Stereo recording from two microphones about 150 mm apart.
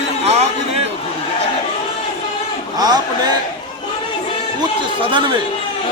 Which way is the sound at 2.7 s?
25° right (ahead or behind).